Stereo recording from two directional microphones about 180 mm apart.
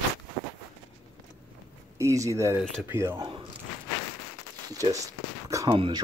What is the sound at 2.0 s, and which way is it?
Speech, 15° right (ahead or behind).